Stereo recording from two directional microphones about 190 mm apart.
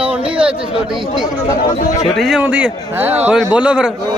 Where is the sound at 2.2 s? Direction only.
5° right (ahead or behind).